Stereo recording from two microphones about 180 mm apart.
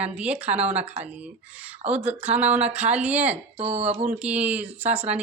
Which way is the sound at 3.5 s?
35° right (ahead or behind).